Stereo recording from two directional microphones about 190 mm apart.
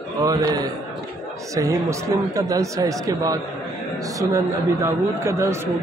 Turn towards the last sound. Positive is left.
turn(degrees=-15)  # may be behind; listen again after turning